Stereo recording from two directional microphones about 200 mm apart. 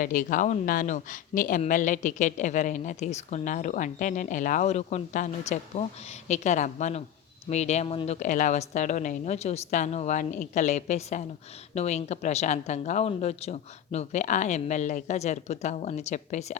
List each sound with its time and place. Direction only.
0.0 s speech: 40° left (ahead or behind)